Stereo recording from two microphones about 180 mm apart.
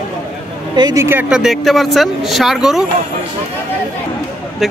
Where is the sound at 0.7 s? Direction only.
20° right (ahead or behind); by 2.9 s 5° right (ahead or behind).